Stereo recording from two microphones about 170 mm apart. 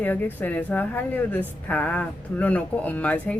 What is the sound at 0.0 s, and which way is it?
A woman's voice, 10° left (ahead or behind).